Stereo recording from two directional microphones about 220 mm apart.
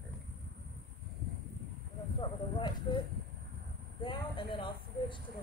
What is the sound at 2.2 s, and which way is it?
Speech, 20° left (ahead or behind).